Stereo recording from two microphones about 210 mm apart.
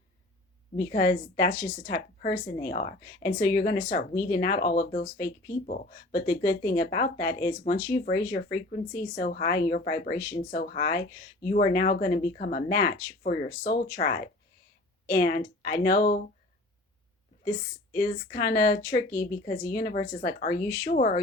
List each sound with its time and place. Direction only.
0.8 s speech: 45° left (ahead or behind)
17.9 s speech: 45° left (ahead or behind)